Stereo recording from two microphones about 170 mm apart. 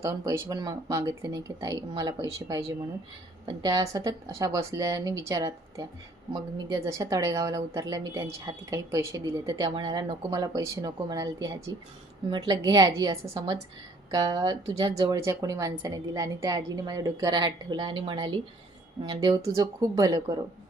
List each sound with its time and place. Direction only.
0.0 s speech: 15° right (ahead or behind)
19.4 s speech: 20° right (ahead or behind)